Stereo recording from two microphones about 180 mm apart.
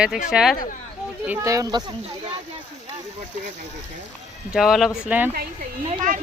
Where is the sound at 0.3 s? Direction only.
5° right (ahead or behind).